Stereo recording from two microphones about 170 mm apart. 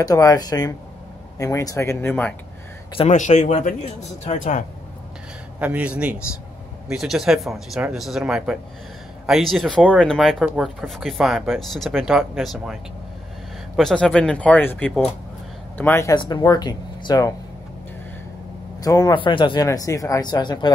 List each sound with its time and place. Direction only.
0.0 s speech: 20° left (ahead or behind)
3.0 s a man's voice: 45° left (ahead or behind)
5.6 s speech: 10° right (ahead or behind)
13.7 s speech: 5° left (ahead or behind)
16.2 s speech: 25° left (ahead or behind)
18.8 s speech: 20° left (ahead or behind)